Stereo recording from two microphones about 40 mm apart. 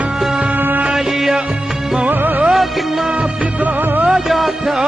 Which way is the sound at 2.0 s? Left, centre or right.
Right.